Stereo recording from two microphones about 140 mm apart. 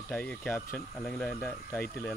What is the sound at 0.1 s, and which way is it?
Speech, 15° left (ahead or behind).